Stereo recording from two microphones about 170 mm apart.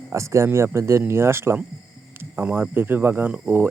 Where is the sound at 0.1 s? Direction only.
15° right (ahead or behind).